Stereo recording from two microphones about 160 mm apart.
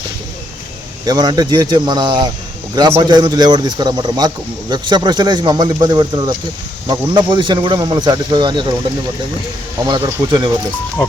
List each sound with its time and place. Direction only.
1.0 s speech: 25° right (ahead or behind)
10.0 s speech: 20° right (ahead or behind)